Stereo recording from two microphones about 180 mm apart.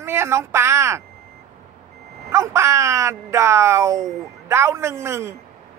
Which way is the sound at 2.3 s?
15° right (ahead or behind).